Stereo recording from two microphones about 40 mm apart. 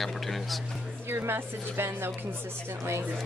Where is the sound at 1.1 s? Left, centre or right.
Right.